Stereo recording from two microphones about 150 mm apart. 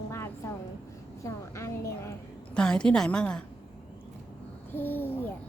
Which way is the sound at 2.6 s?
5° left (ahead or behind).